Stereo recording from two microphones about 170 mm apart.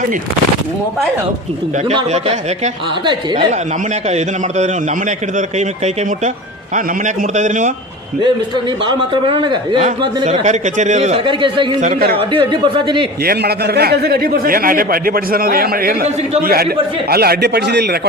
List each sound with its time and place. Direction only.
1.9 s a man's voice: 35° right (ahead or behind)
4.1 s a man's voice: 45° right (ahead or behind)
8.8 s speech: 30° right (ahead or behind)
10.2 s a man's voice: 45° right (ahead or behind)
11.8 s a man's voice: 55° right (ahead or behind)
12.1 s a man's voice: 30° right (ahead or behind)
13.2 s a man's voice: 70° right (ahead or behind)